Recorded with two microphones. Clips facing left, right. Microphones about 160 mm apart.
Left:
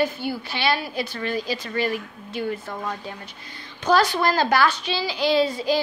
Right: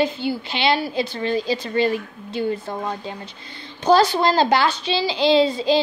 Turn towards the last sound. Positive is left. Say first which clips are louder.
# right 4 dB
turn(degrees=-25)  # may be behind; listen again after turning